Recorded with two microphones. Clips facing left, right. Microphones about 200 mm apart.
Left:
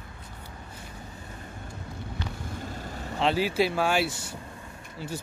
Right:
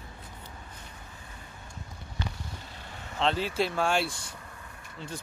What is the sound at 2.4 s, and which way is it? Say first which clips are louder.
Vehicle: left 8 dB; 45° left (ahead or behind).